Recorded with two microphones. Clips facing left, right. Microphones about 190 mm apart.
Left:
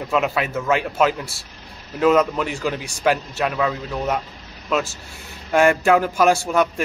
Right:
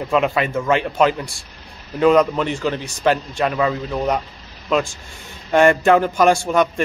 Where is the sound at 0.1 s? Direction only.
5° left (ahead or behind).